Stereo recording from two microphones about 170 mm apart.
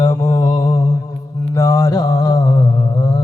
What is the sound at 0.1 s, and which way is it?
Mantra, 20° left (ahead or behind).